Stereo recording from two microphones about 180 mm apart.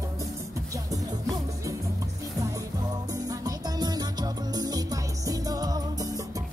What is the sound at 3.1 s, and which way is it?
Music, 20° right (ahead or behind).